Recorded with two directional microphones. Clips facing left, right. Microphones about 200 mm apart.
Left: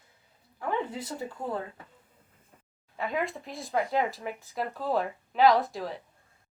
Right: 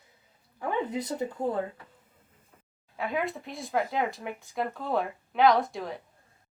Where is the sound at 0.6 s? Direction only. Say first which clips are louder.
Right 2 dB; 20° right (ahead or behind).